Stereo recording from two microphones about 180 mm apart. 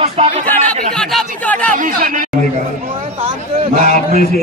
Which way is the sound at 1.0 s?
5° left (ahead or behind).